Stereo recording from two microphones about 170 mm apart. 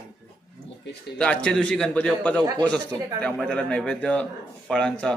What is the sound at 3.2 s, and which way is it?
A man's voice, 5° left (ahead or behind).